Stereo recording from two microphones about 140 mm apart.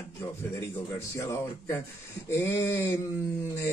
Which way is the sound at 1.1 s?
20° left (ahead or behind).